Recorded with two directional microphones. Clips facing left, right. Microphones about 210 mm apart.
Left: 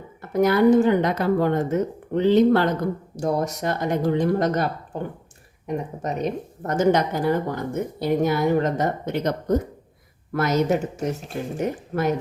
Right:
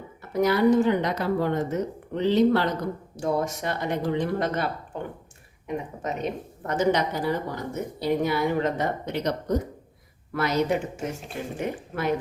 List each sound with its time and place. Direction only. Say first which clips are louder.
0.2 s a woman's voice: left 4 dB; 50° left (ahead or behind)
3.2 s a woman's voice: left 2 dB; 40° left (ahead or behind)